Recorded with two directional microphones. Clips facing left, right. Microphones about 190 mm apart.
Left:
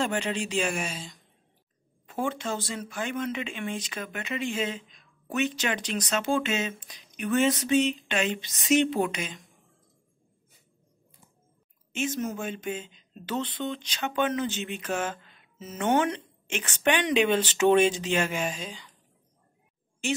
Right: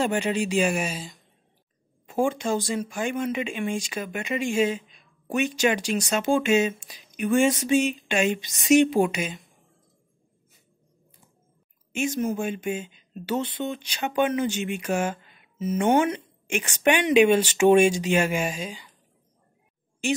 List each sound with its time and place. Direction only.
0.0 s speech: 10° right (ahead or behind)
11.9 s speech: 10° right (ahead or behind)